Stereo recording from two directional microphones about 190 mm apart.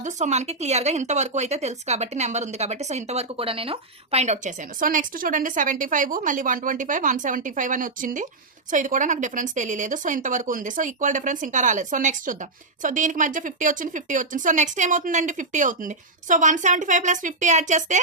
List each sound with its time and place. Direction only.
0.0 s speech: 35° right (ahead or behind)